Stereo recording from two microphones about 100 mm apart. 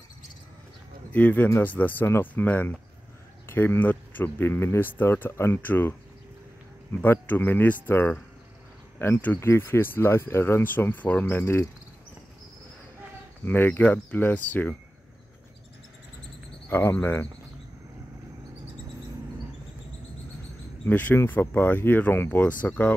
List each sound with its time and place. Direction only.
1.1 s speech: 20° left (ahead or behind)
13.5 s speech: 20° left (ahead or behind)
16.6 s speech: 20° left (ahead or behind)
20.8 s speech: 20° left (ahead or behind)